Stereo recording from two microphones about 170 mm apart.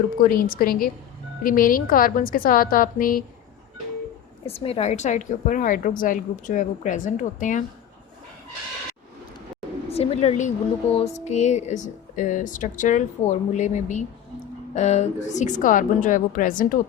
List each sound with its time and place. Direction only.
0.2 s a woman's voice: 55° left (ahead or behind)
4.4 s a woman's voice: 35° left (ahead or behind)
9.9 s a woman's voice: 35° left (ahead or behind); by 16.7 s 55° left (ahead or behind)